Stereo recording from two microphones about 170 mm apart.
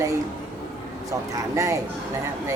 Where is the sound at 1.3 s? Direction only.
20° right (ahead or behind).